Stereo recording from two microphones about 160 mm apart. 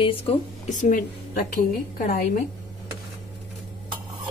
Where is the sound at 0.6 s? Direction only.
50° left (ahead or behind).